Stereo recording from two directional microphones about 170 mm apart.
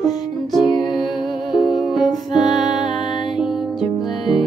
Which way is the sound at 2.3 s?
25° left (ahead or behind).